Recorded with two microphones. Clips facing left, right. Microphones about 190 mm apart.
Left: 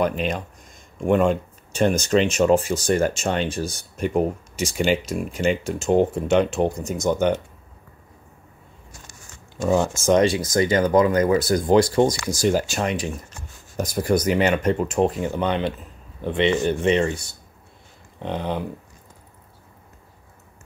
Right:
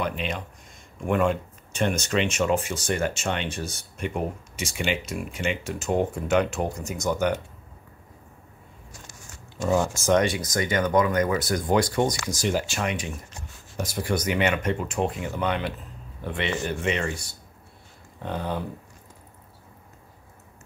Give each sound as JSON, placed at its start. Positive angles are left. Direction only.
{"t": 0.0, "sound": "speech", "side_deg": 45}
{"t": 1.0, "sound": "speech", "side_deg": 30}
{"t": 9.6, "sound": "speech", "side_deg": 20}
{"t": 18.2, "sound": "speech", "side_deg": 20}